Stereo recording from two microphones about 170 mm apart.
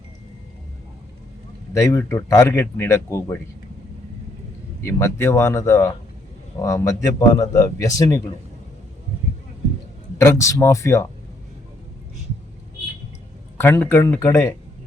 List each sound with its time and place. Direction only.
1.7 s speech: 15° left (ahead or behind)
4.8 s a man's voice: 15° left (ahead or behind)
10.2 s speech: 15° left (ahead or behind)
13.6 s speech: 15° left (ahead or behind)